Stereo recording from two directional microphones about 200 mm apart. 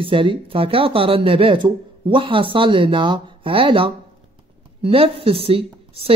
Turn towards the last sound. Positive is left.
turn(degrees=-30)  # may be behind; listen again after turning